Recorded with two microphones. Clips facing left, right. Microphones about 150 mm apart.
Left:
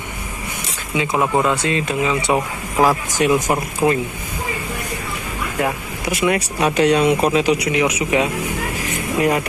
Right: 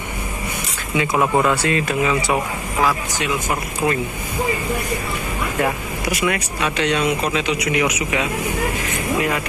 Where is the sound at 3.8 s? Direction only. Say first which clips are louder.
Left 4 dB; 25° left (ahead or behind).